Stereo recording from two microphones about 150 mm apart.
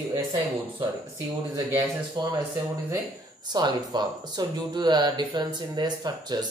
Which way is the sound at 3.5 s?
30° right (ahead or behind).